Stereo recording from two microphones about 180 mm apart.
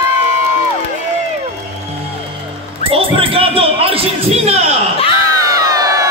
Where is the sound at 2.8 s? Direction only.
30° right (ahead or behind).